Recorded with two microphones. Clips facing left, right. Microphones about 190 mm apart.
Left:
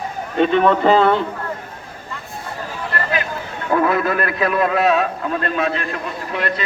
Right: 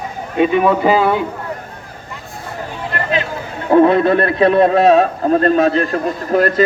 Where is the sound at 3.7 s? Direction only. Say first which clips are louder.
Right 8 dB; 30° right (ahead or behind).